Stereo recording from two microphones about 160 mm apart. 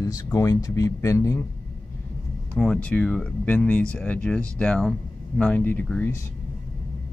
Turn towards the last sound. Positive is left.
turn(degrees=10)  # may be behind; listen again after turning